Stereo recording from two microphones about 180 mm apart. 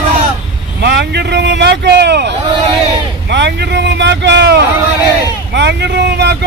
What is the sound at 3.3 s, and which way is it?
Vehicle, 75° right (ahead or behind).